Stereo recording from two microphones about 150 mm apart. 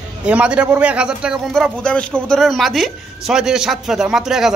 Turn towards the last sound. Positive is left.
turn(degrees=-5)  # may be behind; listen again after turning